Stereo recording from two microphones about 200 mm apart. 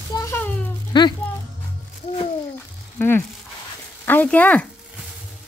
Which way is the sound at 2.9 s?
10° left (ahead or behind).